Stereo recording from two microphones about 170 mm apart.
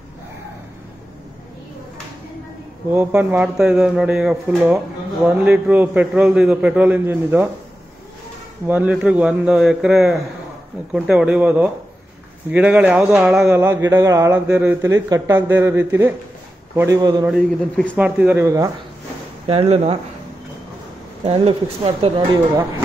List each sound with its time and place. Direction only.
2.9 s a man's voice: 10° right (ahead or behind)
8.6 s a man's voice: 10° right (ahead or behind)
13.5 s a man's voice: 15° right (ahead or behind)
17.3 s speech: 5° left (ahead or behind)
17.9 s a man's voice: 10° right (ahead or behind)
19.4 s speech: 35° right (ahead or behind)
21.2 s speech: 35° right (ahead or behind)